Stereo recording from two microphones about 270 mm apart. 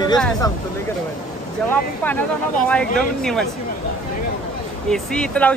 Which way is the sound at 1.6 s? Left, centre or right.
Centre.